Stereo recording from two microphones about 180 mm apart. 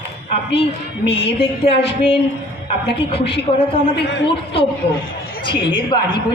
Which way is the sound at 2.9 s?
30° left (ahead or behind).